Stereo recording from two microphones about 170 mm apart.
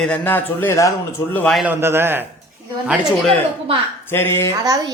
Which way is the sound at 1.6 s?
10° right (ahead or behind).